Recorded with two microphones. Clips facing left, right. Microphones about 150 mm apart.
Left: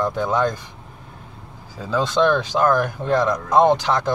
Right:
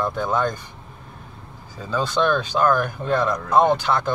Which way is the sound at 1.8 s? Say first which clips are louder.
Left 3 dB; 90° left.